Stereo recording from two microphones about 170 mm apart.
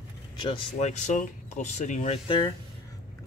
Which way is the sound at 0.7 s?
45° left (ahead or behind).